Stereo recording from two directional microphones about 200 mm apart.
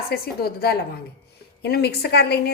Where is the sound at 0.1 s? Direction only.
50° left (ahead or behind).